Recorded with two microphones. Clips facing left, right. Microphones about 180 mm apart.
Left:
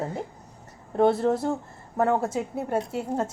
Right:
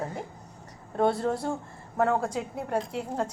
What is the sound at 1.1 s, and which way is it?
Speech, 20° left (ahead or behind).